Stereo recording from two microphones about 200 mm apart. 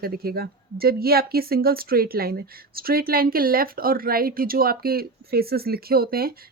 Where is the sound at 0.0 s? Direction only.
50° right (ahead or behind).